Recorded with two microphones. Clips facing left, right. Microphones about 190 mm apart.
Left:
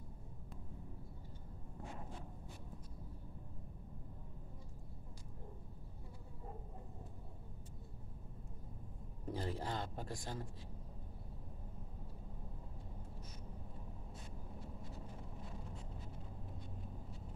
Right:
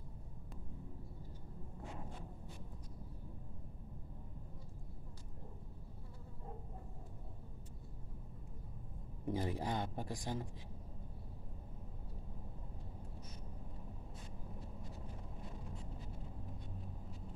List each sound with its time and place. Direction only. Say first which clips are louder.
9.2 s a man's voice: right 3 dB; 15° right (ahead or behind)